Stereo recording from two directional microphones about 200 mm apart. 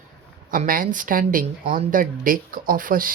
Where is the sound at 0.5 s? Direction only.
45° right (ahead or behind).